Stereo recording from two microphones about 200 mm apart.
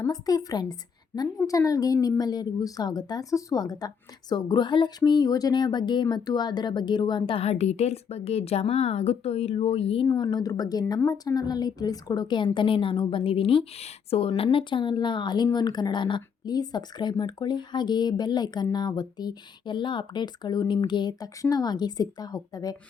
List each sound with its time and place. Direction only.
0.0 s a woman's voice: 20° left (ahead or behind)